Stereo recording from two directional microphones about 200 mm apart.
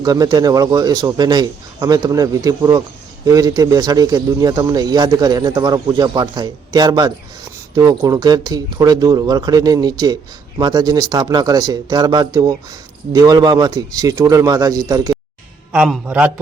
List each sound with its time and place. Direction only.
0.0 s a man's voice: 20° right (ahead or behind)
15.7 s a man's voice: 5° right (ahead or behind)